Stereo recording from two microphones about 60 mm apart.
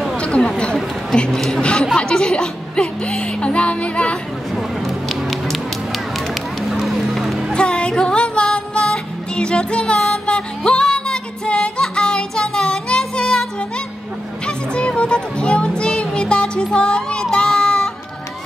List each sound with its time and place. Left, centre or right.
0.2 s a sound: centre
1.1 s a woman's voice: centre
4.6 s music: centre
6.1 s run: centre
7.5 s music: centre